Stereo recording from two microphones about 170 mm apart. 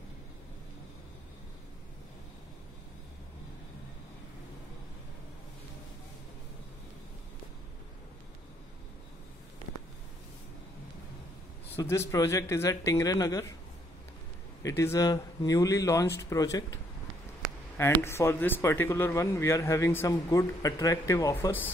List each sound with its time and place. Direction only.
11.7 s a man's voice: 15° left (ahead or behind)
14.6 s speech: 15° left (ahead or behind)